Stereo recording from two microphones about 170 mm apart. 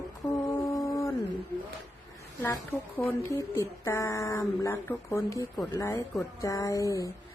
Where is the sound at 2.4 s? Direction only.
15° left (ahead or behind).